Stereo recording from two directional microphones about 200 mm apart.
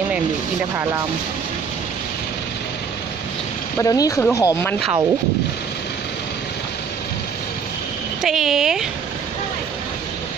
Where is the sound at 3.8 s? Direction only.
15° left (ahead or behind).